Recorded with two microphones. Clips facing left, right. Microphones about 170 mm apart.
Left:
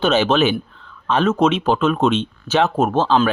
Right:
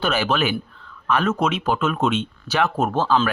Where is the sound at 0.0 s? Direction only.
25° left (ahead or behind).